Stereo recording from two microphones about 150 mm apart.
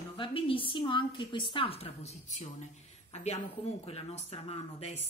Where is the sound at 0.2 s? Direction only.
35° left (ahead or behind).